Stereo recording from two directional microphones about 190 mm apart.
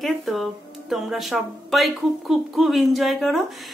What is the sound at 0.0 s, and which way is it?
Speech, centre (ahead or behind).